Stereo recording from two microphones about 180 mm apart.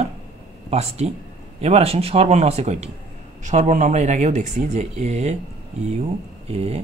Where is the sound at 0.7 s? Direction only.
35° right (ahead or behind).